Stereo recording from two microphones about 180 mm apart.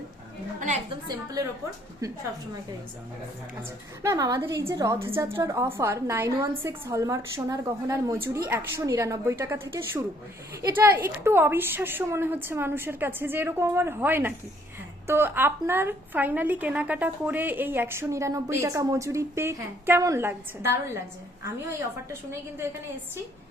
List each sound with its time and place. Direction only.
1.0 s a woman's voice: 20° right (ahead or behind)
4.0 s a woman's voice: 20° right (ahead or behind)